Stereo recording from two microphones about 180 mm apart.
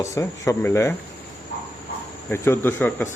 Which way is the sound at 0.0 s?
15° left (ahead or behind).